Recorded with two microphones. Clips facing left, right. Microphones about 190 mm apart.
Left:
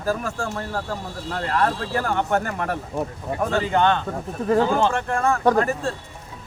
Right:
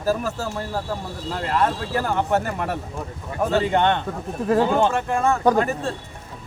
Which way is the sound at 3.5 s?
25° right (ahead or behind).